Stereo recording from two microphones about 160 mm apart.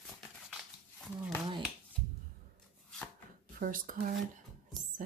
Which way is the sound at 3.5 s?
60° right (ahead or behind).